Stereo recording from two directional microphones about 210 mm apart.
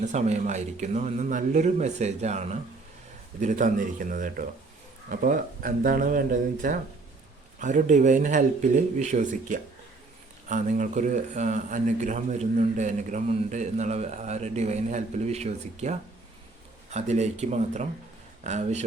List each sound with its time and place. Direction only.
0.0 s speech: 35° right (ahead or behind)